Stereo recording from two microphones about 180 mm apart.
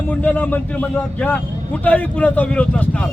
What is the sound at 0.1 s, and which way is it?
Speech, 10° left (ahead or behind).